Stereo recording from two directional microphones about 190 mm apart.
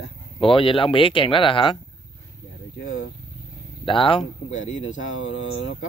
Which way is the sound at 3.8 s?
25° left (ahead or behind).